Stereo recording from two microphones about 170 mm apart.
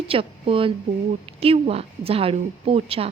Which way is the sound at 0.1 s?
30° right (ahead or behind).